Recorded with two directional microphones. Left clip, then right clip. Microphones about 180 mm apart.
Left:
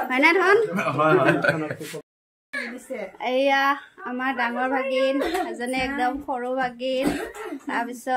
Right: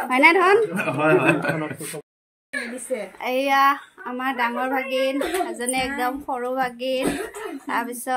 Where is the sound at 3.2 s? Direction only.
10° left (ahead or behind).